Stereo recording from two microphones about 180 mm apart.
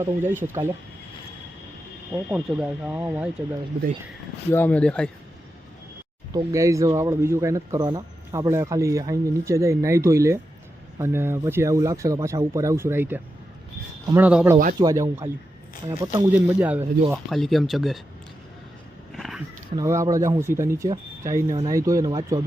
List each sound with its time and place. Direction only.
0.0 s speech: 10° right (ahead or behind)
2.1 s speech: 10° right (ahead or behind)
4.4 s speech: 10° left (ahead or behind)
6.3 s speech: 15° right (ahead or behind)
14.8 s speech: 20° right (ahead or behind)
17.2 s speech: centre (ahead or behind)
19.1 s a sound: centre (ahead or behind)
19.7 s speech: 15° right (ahead or behind)